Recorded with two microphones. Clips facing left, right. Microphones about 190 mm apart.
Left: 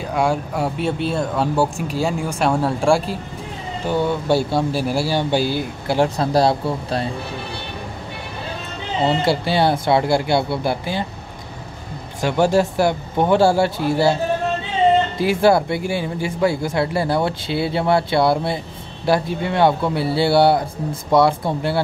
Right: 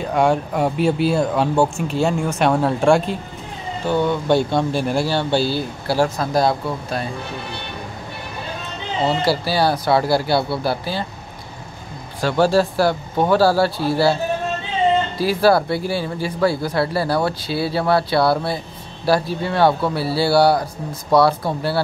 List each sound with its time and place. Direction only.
0.0 s speech: 10° left (ahead or behind)
6.0 s speech: 30° left (ahead or behind)
9.2 s speech: 20° left (ahead or behind)
12.2 s speech: 20° left (ahead or behind)
15.1 s speech: 20° left (ahead or behind)